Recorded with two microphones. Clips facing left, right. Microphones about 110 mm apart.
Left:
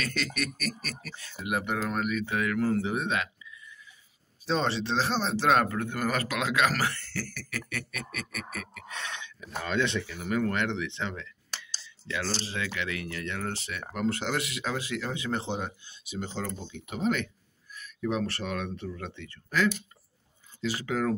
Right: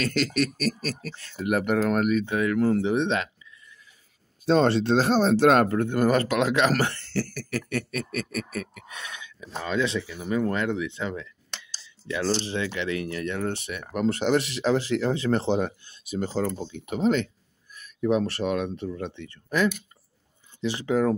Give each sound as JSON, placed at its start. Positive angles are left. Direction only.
{"t": 0.0, "sound": "a sound", "side_deg": -35}
{"t": 1.4, "sound": "speech", "side_deg": -50}
{"t": 2.1, "sound": "speech", "side_deg": -25}
{"t": 4.5, "sound": "speech", "side_deg": -50}
{"t": 5.7, "sound": "speech", "side_deg": -30}
{"t": 6.8, "sound": "a sound", "side_deg": -30}
{"t": 8.9, "sound": "speech", "side_deg": -10}
{"t": 10.2, "sound": "speech", "side_deg": -25}
{"t": 10.7, "sound": "speech", "side_deg": -10}
{"t": 11.6, "sound": "speech", "side_deg": -25}
{"t": 14.0, "sound": "a sound", "side_deg": -25}
{"t": 16.0, "sound": "speech", "side_deg": -45}
{"t": 16.7, "sound": "a sound", "side_deg": -40}
{"t": 18.0, "sound": "speech", "side_deg": -20}